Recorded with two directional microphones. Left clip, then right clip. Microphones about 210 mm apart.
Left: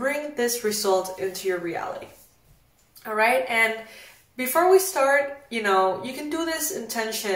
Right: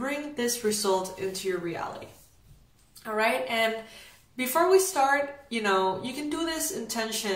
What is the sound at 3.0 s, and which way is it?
A woman's voice, 5° right (ahead or behind).